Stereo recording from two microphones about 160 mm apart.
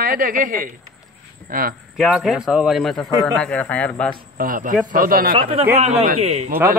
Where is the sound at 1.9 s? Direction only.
Centre (ahead or behind).